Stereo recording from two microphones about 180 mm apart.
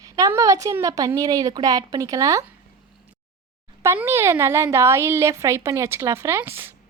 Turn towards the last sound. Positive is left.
turn(degrees=-10)  # may be behind; listen again after turning